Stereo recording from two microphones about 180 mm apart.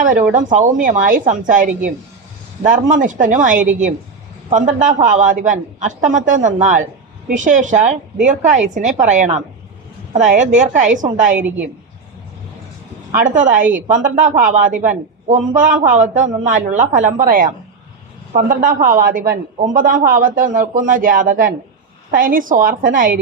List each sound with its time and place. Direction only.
0.3 s speech: 45° right (ahead or behind)
2.9 s speech: 45° right (ahead or behind)
11.3 s a woman's voice: 10° right (ahead or behind)
13.1 s speech: 45° right (ahead or behind)